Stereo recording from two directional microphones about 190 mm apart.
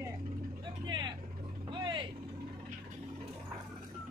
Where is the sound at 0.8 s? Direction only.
25° right (ahead or behind).